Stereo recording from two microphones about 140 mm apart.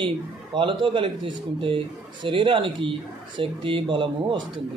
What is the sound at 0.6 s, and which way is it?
Speech, 35° right (ahead or behind).